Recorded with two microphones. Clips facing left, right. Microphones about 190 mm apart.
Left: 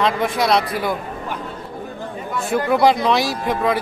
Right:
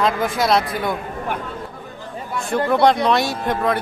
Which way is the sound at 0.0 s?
Centre (ahead or behind).